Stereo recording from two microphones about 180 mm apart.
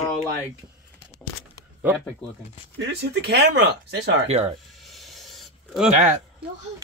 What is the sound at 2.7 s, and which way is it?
Speech, 85° right.